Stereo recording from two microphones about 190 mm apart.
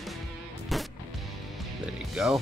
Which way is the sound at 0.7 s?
Centre (ahead or behind).